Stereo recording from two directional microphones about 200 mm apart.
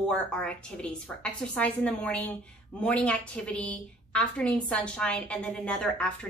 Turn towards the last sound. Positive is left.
turn(degrees=5)  # may be behind; listen again after turning